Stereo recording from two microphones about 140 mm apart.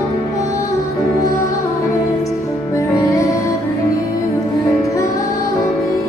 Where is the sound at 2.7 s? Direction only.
25° left (ahead or behind).